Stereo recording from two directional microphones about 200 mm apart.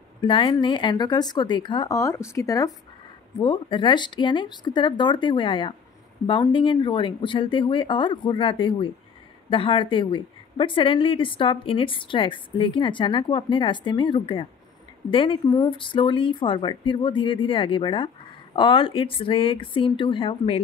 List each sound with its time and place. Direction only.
0.2 s speech: 25° left (ahead or behind)